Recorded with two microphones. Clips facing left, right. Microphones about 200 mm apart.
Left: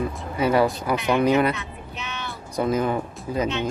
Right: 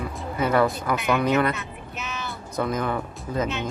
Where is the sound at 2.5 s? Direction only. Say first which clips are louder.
Left 3 dB; 15° left (ahead or behind).